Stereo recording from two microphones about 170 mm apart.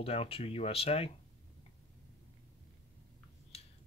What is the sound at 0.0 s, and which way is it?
Speech, 35° left (ahead or behind).